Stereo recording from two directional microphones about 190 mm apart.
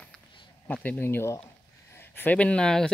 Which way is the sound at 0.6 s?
10° left (ahead or behind).